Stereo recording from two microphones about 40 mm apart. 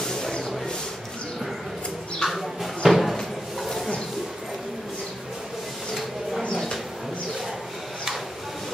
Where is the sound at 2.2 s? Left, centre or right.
Centre.